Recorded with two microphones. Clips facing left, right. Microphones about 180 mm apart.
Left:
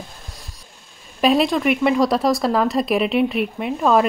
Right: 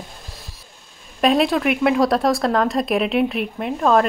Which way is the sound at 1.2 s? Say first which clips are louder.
Even; centre (ahead or behind).